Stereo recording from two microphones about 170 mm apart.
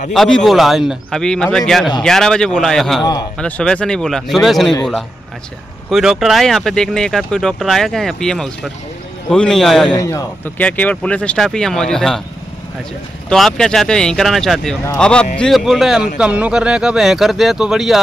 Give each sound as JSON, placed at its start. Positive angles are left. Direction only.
{"t": 0.1, "sound": "speech", "side_deg": 0}
{"t": 3.0, "sound": "a man's voice", "side_deg": 25}
{"t": 3.3, "sound": "speech", "side_deg": 5}
{"t": 5.9, "sound": "speech", "side_deg": 0}
{"t": 9.9, "sound": "speech", "side_deg": 20}
{"t": 13.3, "sound": "speech", "side_deg": 5}